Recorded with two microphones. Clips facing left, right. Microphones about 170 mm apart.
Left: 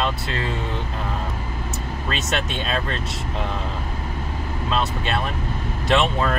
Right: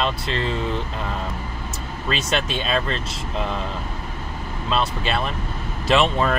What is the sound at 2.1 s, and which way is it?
Speech, centre (ahead or behind).